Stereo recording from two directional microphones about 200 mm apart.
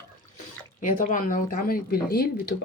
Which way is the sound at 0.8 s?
40° left (ahead or behind).